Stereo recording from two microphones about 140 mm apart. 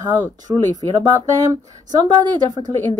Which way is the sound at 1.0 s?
25° right (ahead or behind).